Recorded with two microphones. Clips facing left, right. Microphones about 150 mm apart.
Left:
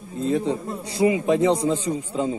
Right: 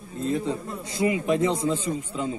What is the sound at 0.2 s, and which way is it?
A man's voice, 30° left (ahead or behind).